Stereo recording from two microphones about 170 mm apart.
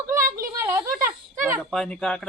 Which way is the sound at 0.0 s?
15° right (ahead or behind).